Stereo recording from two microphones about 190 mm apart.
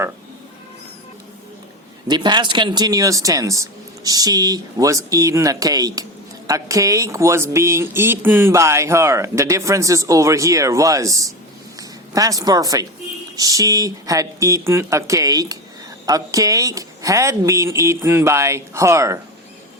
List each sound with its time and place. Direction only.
2.0 s a woman's voice: 25° right (ahead or behind)